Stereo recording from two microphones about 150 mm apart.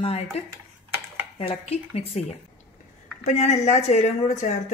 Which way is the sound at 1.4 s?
40° left (ahead or behind).